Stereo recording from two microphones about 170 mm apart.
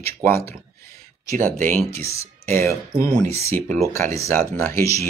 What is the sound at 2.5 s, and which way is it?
Speech, 15° left (ahead or behind).